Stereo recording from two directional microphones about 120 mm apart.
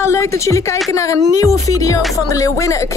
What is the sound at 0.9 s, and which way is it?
Speech, 25° left (ahead or behind).